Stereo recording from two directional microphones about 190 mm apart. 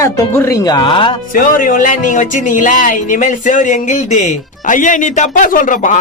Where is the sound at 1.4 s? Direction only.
45° left (ahead or behind).